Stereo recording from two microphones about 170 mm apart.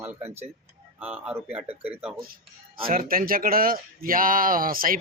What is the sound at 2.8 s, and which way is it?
Speech, 55° right (ahead or behind).